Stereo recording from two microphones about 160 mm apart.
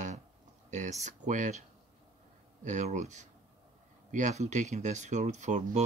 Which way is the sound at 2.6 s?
50° right (ahead or behind).